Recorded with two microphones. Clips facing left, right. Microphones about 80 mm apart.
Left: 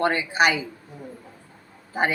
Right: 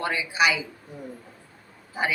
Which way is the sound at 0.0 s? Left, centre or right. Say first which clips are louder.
Left 3 dB; left.